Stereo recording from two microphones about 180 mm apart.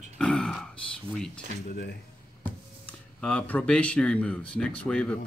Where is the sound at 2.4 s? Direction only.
10° left (ahead or behind).